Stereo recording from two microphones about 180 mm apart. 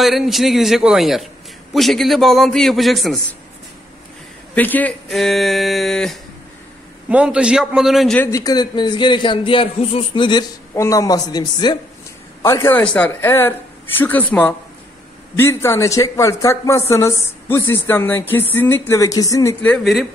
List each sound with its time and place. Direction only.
0.0 s a man's voice: centre (ahead or behind)
4.6 s a man's voice: 10° left (ahead or behind)
8.3 s a man's voice: 20° left (ahead or behind)
19.6 s a man's voice: 5° left (ahead or behind)